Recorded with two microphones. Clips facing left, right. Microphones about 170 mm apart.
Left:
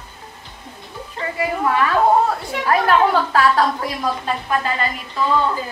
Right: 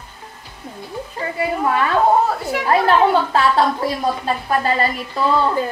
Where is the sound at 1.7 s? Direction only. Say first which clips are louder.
Even; 25° right (ahead or behind).